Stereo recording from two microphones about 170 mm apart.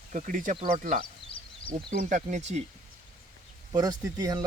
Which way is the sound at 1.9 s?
45° right (ahead or behind).